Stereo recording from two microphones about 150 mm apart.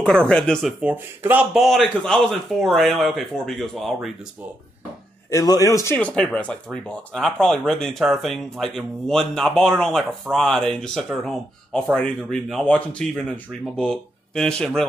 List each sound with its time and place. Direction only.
0.0 s speech: 5° left (ahead or behind)
5.3 s a man's voice: 25° left (ahead or behind)
5.9 s speech: 5° left (ahead or behind)